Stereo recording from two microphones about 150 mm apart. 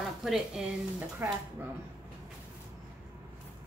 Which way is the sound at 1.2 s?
15° right (ahead or behind).